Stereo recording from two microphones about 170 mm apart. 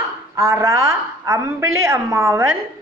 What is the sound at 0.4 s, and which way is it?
A woman's voice, 15° right (ahead or behind).